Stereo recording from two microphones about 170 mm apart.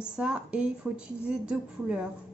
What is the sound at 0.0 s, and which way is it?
A woman's voice, 5° right (ahead or behind).